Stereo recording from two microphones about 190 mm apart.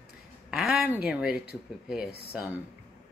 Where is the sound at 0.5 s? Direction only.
Centre (ahead or behind).